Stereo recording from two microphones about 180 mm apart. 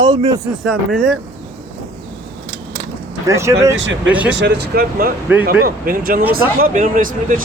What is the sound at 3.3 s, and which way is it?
Speech, 15° right (ahead or behind).